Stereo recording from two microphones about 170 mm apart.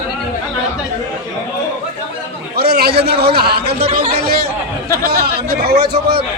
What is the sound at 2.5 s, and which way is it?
Chatter, 70° right (ahead or behind).